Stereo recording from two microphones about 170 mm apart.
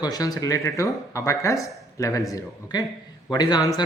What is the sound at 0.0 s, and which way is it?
Speech, 20° left (ahead or behind).